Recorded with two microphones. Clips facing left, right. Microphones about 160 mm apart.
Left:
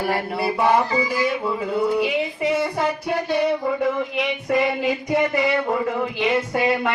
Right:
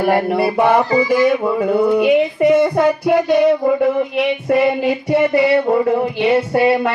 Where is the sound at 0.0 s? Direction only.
55° right (ahead or behind); by 5.7 s 35° right (ahead or behind).